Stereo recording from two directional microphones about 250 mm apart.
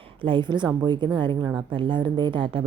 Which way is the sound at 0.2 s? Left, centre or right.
Centre.